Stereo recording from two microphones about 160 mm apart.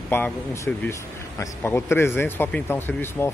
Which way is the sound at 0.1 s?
15° left (ahead or behind).